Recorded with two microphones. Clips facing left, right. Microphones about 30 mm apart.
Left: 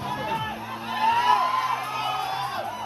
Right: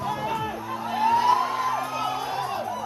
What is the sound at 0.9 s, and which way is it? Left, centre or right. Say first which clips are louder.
Music: even; left.